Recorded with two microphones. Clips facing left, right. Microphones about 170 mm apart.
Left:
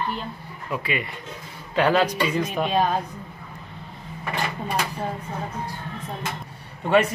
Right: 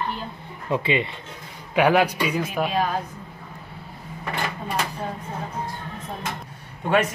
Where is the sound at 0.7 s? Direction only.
25° right (ahead or behind).